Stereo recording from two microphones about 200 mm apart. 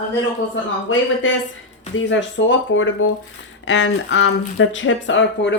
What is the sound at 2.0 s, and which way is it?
Speech, 65° left (ahead or behind).